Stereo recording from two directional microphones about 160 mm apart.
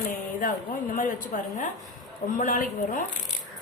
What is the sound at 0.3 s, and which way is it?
Speech, 55° left (ahead or behind).